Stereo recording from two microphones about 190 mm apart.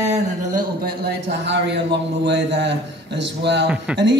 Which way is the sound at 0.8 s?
65° right (ahead or behind).